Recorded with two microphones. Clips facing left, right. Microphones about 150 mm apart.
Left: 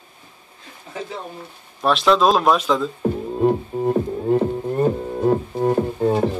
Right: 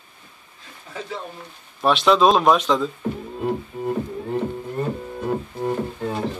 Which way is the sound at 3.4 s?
35° left (ahead or behind).